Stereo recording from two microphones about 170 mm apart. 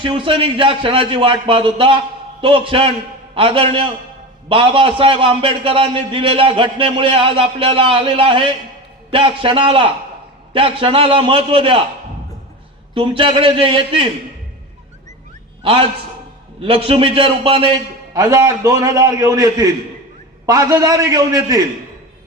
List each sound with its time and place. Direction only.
0.0 s a man's voice: 30° right (ahead or behind)
12.9 s a man's voice: 30° right (ahead or behind)
15.6 s a man's voice: 30° right (ahead or behind)